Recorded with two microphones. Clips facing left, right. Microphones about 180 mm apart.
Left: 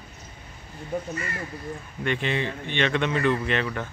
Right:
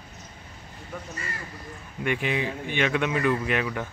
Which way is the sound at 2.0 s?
10° right (ahead or behind).